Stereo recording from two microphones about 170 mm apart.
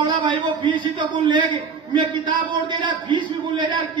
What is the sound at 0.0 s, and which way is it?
A man's voice, 25° right (ahead or behind).